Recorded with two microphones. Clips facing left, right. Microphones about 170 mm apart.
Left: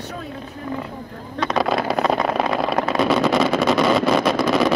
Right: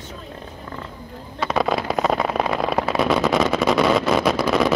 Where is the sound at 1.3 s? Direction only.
5° right (ahead or behind).